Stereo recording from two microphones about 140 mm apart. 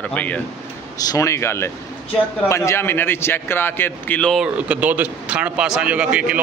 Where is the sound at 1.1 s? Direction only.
20° left (ahead or behind).